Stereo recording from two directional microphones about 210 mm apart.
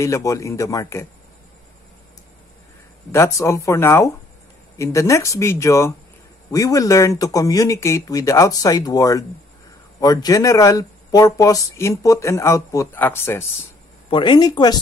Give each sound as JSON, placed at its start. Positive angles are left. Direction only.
{"t": 0.0, "sound": "speech", "side_deg": 15}
{"t": 3.1, "sound": "speech", "side_deg": 15}
{"t": 14.1, "sound": "speech", "side_deg": 20}